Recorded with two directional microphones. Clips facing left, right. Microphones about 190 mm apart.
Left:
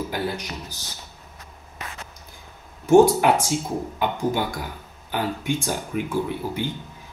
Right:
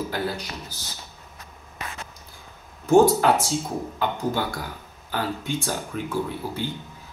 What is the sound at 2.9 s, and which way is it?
A man's voice, 15° left (ahead or behind).